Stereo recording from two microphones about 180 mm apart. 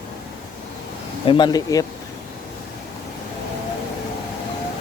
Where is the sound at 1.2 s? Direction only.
25° left (ahead or behind).